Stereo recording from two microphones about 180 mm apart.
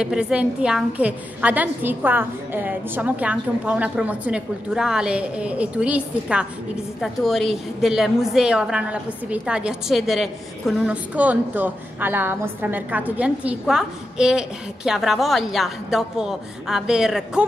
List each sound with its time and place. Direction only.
0.0 s a woman's voice: 5° right (ahead or behind)